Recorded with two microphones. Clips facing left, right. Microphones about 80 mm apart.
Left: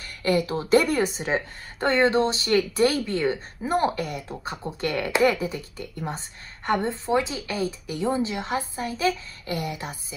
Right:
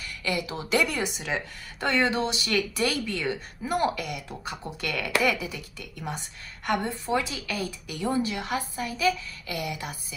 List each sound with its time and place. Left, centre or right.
0.0 s a woman's voice: left